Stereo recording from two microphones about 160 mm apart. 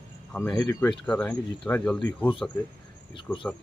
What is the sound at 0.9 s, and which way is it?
Speech, 5° left (ahead or behind).